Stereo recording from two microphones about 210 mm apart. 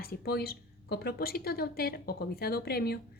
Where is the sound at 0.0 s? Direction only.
45° left (ahead or behind).